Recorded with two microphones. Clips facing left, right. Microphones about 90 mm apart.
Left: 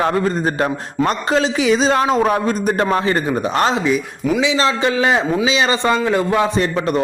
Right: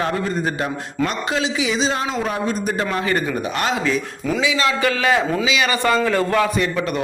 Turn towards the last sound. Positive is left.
turn(degrees=35)  # may be behind; listen again after turning